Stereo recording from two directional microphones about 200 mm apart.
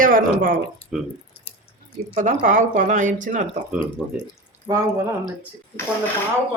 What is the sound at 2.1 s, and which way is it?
Speech, 40° right (ahead or behind).